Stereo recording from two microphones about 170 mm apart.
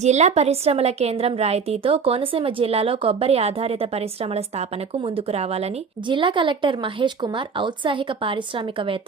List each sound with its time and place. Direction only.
0.0 s a woman's voice: 40° right (ahead or behind)